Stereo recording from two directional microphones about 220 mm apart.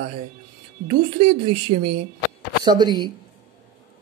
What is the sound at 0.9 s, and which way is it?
Speech, 25° right (ahead or behind).